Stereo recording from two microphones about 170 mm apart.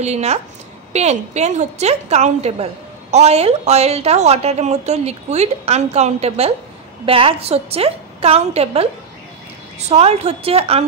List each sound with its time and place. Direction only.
0.0 s a woman's voice: 40° right (ahead or behind)